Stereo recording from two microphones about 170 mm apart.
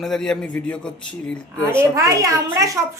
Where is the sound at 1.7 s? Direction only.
15° right (ahead or behind).